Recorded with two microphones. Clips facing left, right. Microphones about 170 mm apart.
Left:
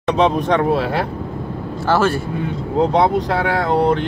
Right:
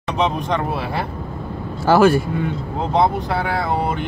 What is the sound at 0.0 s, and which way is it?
Speech, 65° left (ahead or behind).